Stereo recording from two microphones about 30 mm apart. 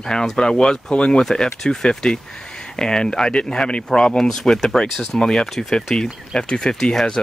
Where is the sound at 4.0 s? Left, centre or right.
Centre.